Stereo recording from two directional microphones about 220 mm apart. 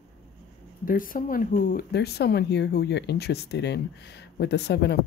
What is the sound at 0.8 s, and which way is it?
Speech, 40° left (ahead or behind).